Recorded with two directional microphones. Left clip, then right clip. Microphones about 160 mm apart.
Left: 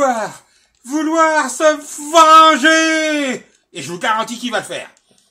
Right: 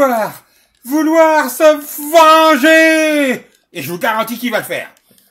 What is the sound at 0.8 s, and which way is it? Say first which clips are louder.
Speech: right 4 dB; 55° right (ahead or behind).